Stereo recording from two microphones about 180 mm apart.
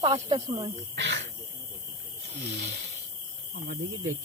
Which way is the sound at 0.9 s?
80° right.